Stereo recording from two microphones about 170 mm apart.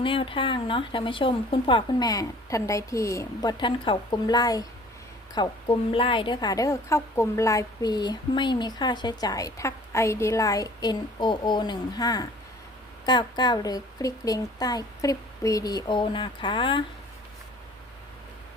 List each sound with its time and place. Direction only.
0.0 s a woman's voice: 30° left (ahead or behind)